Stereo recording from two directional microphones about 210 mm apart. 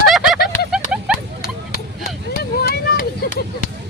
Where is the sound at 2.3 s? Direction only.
45° left (ahead or behind).